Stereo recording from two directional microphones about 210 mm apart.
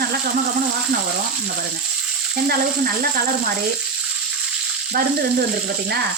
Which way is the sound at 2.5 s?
45° right (ahead or behind).